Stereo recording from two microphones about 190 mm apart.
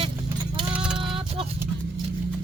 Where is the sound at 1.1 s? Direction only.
30° right (ahead or behind).